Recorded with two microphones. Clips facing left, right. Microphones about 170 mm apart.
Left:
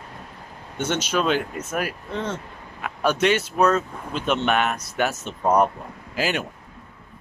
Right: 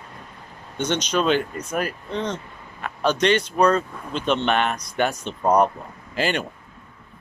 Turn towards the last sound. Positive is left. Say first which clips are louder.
# right 1 dB
turn(degrees=5)  # may be behind; listen again after turning